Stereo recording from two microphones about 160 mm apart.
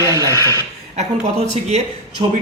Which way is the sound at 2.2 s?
25° right (ahead or behind).